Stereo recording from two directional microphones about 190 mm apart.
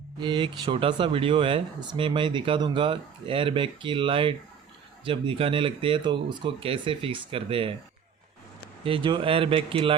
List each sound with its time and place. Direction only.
0.2 s speech: 25° right (ahead or behind)
8.8 s speech: 25° right (ahead or behind)